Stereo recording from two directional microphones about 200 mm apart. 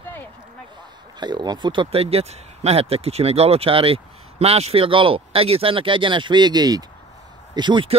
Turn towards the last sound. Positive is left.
turn(degrees=-25)  # may be behind; listen again after turning